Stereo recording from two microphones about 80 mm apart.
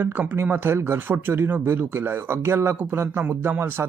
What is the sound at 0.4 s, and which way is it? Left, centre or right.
Speech, right.